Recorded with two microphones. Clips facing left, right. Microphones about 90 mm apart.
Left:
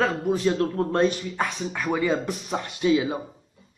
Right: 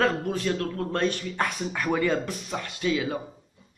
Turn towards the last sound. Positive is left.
turn(degrees=20)  # may be behind; listen again after turning